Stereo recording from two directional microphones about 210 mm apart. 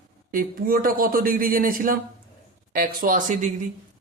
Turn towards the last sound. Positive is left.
turn(degrees=-40)  # may be behind; listen again after turning